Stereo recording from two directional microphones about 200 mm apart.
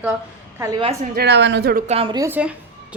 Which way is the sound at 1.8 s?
30° right (ahead or behind).